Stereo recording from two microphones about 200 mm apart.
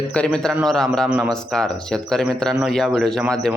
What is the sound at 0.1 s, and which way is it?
A man's voice, 5° left (ahead or behind).